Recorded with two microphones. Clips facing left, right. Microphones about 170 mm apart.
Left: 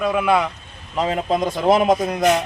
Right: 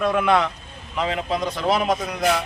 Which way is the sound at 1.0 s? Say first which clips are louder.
Left 4 dB; 40° left (ahead or behind).